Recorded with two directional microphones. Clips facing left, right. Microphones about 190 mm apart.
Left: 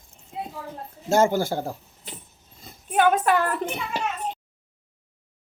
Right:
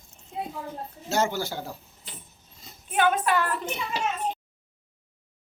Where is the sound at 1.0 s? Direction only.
50° left (ahead or behind).